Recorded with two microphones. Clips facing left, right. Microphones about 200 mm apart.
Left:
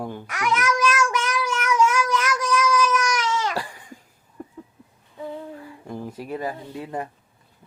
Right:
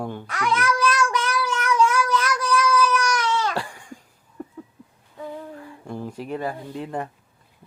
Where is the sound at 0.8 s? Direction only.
10° left (ahead or behind).